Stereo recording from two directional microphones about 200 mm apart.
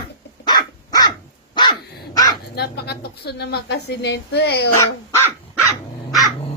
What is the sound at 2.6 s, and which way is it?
A woman's voice, 55° left (ahead or behind).